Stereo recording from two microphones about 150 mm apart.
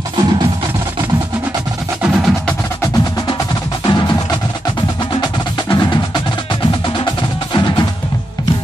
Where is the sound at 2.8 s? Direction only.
25° left (ahead or behind).